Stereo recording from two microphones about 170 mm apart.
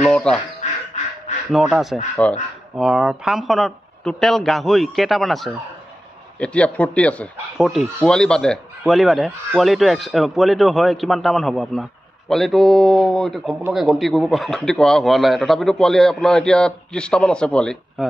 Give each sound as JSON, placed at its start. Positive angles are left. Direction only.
{"t": 0.0, "sound": "speech", "side_deg": 5}
{"t": 0.6, "sound": "duck", "side_deg": 40}
{"t": 1.5, "sound": "speech", "side_deg": 0}